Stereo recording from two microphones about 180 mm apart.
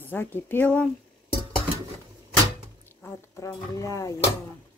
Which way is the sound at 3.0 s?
15° left (ahead or behind).